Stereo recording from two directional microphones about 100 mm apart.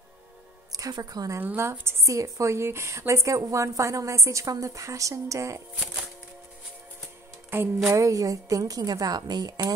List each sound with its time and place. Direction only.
0.7 s a woman's voice: 40° right (ahead or behind)
1.4 s a woman's voice: 20° right (ahead or behind)
7.9 s a woman's voice: 35° right (ahead or behind)